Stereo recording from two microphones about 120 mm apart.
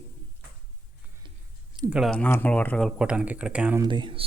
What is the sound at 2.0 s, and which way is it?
Speech, 10° left (ahead or behind).